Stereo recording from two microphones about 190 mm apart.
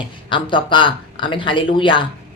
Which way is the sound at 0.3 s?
25° left (ahead or behind).